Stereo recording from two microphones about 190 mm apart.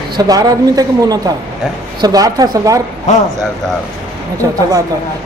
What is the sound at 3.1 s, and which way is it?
Speech, 35° left (ahead or behind).